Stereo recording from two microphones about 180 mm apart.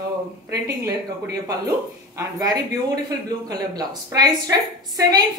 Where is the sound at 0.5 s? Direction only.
15° right (ahead or behind).